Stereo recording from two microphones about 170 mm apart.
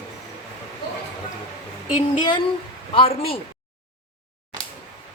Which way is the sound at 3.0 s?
35° left (ahead or behind).